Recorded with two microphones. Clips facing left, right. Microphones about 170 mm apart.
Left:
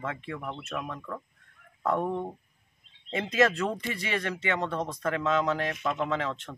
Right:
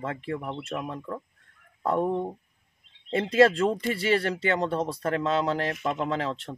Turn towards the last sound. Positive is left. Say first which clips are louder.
# right 2 dB
turn(degrees=-35)  # may be behind; listen again after turning